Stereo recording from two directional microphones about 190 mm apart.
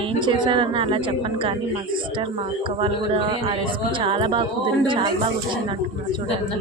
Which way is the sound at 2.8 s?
25° right (ahead or behind).